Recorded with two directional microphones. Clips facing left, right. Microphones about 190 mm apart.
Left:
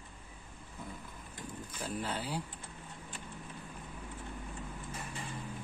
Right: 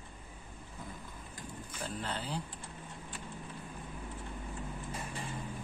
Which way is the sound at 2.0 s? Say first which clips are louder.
Right 1 dB; 10° left (ahead or behind).